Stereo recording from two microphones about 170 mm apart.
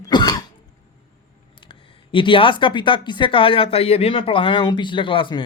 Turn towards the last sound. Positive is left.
turn(degrees=30)  # may be behind; listen again after turning